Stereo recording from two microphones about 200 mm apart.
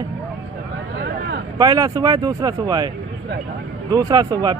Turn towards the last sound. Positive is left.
turn(degrees=-20)  # may be behind; listen again after turning